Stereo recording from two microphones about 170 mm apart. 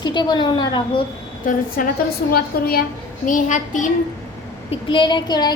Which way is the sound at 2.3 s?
65° left (ahead or behind).